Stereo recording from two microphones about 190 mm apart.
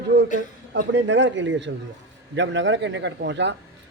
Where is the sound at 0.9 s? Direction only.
75° right (ahead or behind).